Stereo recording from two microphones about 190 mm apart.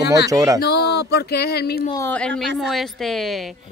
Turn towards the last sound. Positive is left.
turn(degrees=0)  # may be behind; listen again after turning